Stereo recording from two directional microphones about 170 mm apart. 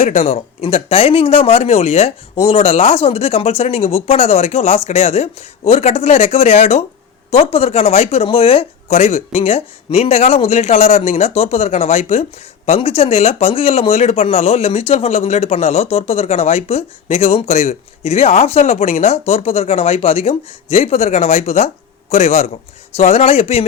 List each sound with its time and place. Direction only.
0.0 s speech: 40° left (ahead or behind)